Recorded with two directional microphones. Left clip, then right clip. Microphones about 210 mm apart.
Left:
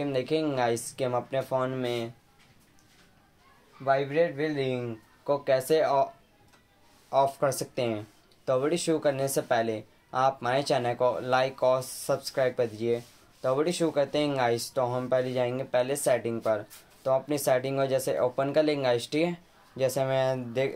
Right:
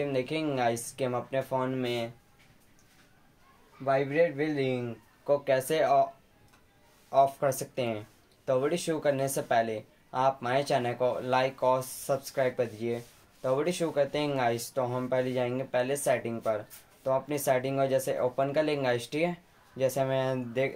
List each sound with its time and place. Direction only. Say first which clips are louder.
0.0 s speech: left 2 dB; 20° left (ahead or behind)
3.8 s speech: left 1 dB; 15° left (ahead or behind)
7.1 s speech: even; 20° left (ahead or behind)